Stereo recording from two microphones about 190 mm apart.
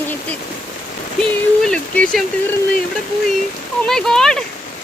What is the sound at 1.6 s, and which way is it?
Speech, 5° left (ahead or behind).